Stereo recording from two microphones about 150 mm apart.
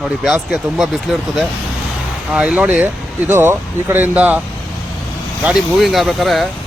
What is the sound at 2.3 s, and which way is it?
Speech, 5° right (ahead or behind).